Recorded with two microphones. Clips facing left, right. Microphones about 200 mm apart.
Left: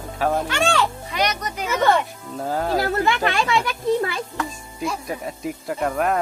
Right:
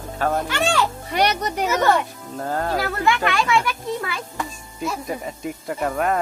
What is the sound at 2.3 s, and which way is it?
Speech, 5° left (ahead or behind).